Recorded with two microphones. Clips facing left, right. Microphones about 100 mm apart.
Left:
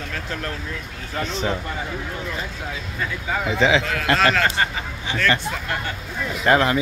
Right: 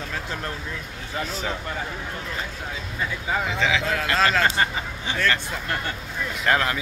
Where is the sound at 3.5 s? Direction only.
25° left (ahead or behind).